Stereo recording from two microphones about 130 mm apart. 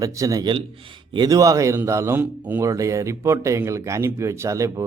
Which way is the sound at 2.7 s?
25° right (ahead or behind).